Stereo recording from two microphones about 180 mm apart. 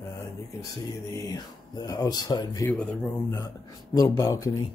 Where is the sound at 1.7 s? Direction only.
20° left (ahead or behind).